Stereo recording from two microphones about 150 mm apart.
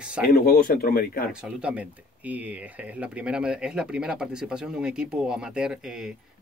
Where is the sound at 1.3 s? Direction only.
5° right (ahead or behind).